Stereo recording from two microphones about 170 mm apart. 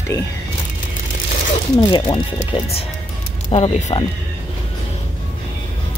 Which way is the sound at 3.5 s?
35° left (ahead or behind).